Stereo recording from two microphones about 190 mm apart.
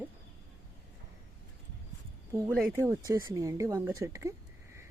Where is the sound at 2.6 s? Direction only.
10° right (ahead or behind).